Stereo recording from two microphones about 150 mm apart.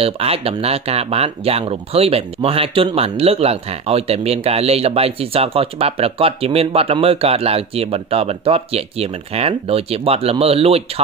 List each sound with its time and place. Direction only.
0.0 s speech: 40° right (ahead or behind)